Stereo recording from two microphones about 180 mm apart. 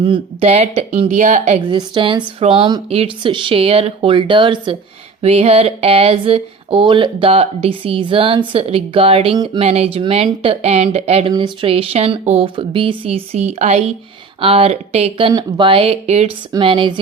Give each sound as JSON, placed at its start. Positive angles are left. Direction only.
{"t": 0.0, "sound": "speech", "side_deg": -30}
{"t": 1.6, "sound": "speech", "side_deg": -25}
{"t": 15.3, "sound": "speech", "side_deg": -25}